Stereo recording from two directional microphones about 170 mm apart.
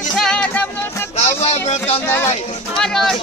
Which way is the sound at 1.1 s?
40° left (ahead or behind).